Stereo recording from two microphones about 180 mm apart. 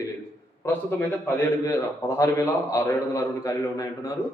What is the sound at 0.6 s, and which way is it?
A man's voice, 10° left (ahead or behind).